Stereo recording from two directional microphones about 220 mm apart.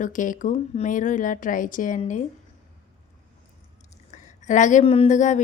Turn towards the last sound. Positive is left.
turn(degrees=35)  # may be behind; listen again after turning